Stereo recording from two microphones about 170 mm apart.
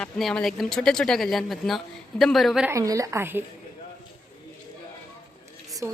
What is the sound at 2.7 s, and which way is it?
Speech, 20° right (ahead or behind).